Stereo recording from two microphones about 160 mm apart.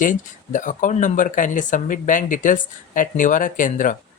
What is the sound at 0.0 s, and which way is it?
Speech, 55° left (ahead or behind).